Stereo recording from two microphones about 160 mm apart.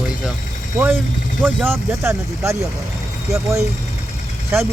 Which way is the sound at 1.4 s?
10° right (ahead or behind).